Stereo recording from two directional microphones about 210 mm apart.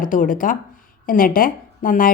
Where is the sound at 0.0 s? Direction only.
40° left (ahead or behind).